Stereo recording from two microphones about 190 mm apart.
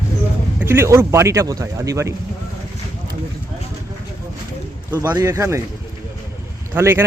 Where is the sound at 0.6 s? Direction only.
15° right (ahead or behind).